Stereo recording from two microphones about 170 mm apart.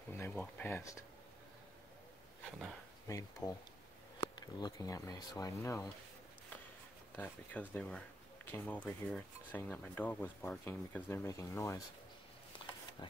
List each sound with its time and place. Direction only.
0.1 s speech: 15° left (ahead or behind)
3.1 s speech: 20° left (ahead or behind)
7.2 s speech: 10° left (ahead or behind)